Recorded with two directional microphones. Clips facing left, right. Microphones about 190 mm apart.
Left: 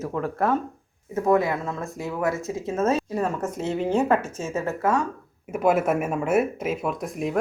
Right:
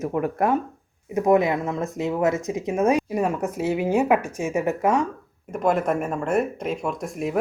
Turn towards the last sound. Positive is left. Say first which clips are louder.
# even
turn(degrees=0)  # may be behind; listen again after turning